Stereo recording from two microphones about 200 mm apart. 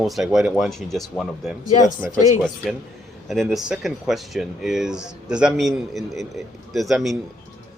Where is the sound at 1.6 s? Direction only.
35° left (ahead or behind).